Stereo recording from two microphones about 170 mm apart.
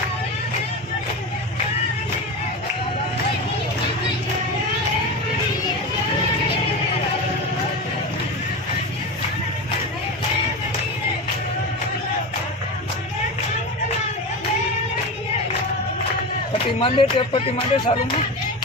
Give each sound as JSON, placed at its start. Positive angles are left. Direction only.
{"t": 16.7, "sound": "speech", "side_deg": 30}